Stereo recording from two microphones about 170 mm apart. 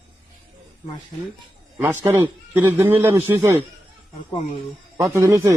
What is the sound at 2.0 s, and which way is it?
Speech, 10° right (ahead or behind).